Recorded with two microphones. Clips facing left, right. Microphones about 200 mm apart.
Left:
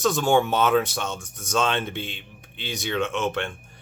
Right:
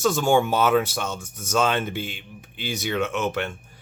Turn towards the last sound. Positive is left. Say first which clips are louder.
# right 1 dB
turn(degrees=-5)  # may be behind; listen again after turning